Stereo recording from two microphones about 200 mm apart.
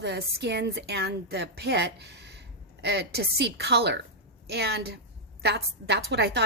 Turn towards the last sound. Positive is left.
turn(degrees=-60)  # may be behind; listen again after turning